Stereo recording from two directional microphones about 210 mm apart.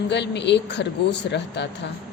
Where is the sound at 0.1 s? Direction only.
55° left (ahead or behind).